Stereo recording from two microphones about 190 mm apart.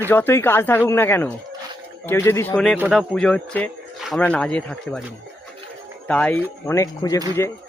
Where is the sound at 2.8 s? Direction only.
5° right (ahead or behind).